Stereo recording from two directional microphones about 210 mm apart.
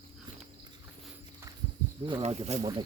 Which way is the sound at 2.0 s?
25° right (ahead or behind).